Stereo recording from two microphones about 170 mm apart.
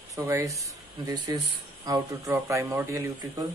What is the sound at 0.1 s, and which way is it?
A man's voice, 20° right (ahead or behind).